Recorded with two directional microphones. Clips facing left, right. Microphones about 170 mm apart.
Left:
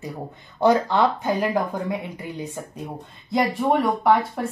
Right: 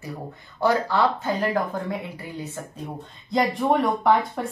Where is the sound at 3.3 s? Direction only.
Centre (ahead or behind).